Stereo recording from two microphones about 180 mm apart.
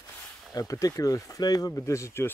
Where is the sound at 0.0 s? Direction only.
20° left (ahead or behind).